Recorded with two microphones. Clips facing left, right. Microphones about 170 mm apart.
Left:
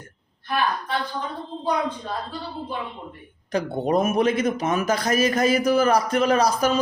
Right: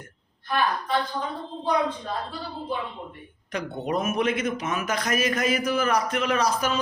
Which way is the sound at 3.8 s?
35° left (ahead or behind).